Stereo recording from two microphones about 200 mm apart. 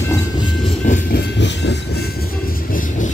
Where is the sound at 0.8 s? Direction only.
55° left (ahead or behind).